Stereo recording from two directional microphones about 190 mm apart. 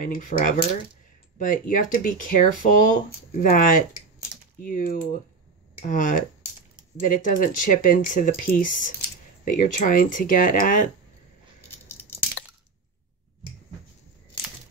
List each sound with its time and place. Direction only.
0.0 s speech: 45° left (ahead or behind)